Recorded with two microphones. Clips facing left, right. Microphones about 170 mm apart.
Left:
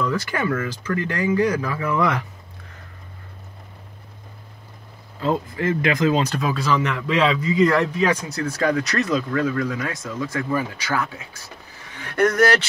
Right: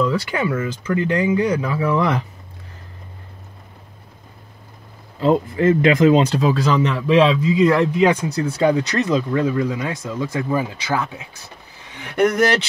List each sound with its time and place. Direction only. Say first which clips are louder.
0.0 s speech: right 3 dB; 15° right (ahead or behind)
5.2 s speech: right 6 dB; 25° right (ahead or behind)
7.0 s speech: right 5 dB; 15° right (ahead or behind)